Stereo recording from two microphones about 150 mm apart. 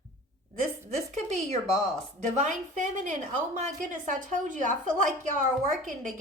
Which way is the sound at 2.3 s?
55° right (ahead or behind).